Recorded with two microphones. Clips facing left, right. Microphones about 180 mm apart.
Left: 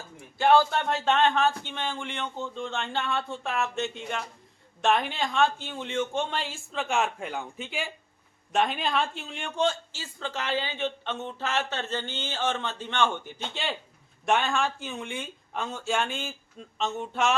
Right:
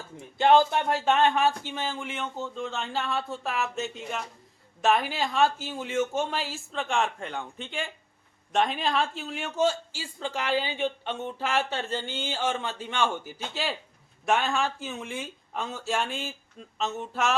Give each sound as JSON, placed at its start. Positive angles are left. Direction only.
{"t": 0.3, "sound": "a man's voice", "side_deg": -20}